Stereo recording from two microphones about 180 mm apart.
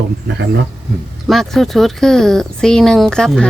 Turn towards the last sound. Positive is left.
turn(degrees=5)  # may be behind; listen again after turning